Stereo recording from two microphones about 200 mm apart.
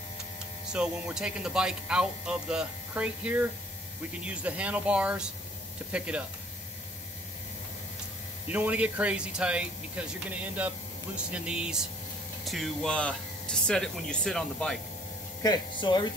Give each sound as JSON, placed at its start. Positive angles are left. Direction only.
{"t": 0.7, "sound": "speech", "side_deg": -5}
{"t": 8.5, "sound": "speech", "side_deg": -10}
{"t": 15.4, "sound": "speech", "side_deg": 20}